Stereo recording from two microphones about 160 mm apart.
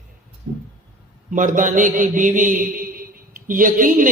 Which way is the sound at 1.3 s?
55° right (ahead or behind).